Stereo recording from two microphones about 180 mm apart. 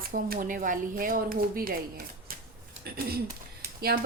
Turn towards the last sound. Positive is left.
turn(degrees=-55)  # may be behind; listen again after turning